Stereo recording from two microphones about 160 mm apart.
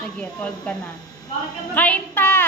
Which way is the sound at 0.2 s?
5° left (ahead or behind).